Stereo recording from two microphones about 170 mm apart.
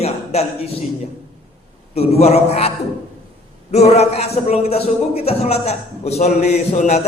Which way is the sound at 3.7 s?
40° left (ahead or behind).